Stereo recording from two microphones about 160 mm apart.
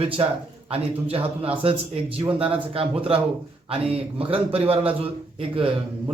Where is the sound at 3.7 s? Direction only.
35° right (ahead or behind).